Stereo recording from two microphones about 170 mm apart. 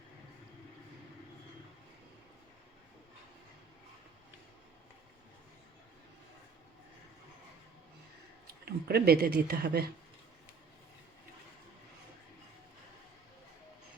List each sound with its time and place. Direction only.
8.6 s speech: 70° right (ahead or behind)